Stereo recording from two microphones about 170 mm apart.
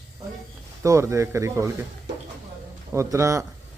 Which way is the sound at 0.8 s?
15° right (ahead or behind).